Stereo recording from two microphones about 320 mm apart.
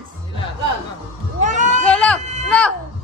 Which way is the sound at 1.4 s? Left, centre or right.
Right.